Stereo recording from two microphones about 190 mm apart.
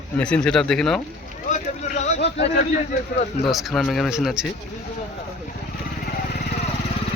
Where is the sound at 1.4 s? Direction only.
40° left (ahead or behind).